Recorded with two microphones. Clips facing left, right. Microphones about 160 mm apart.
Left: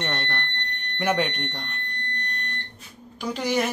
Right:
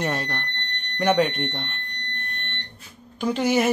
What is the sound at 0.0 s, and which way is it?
Fire alarm, centre (ahead or behind).